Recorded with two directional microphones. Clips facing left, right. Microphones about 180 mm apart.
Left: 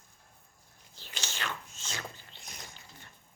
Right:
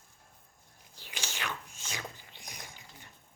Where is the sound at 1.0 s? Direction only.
10° right (ahead or behind).